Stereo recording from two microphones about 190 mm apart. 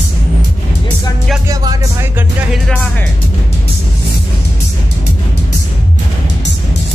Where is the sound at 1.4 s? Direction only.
20° right (ahead or behind).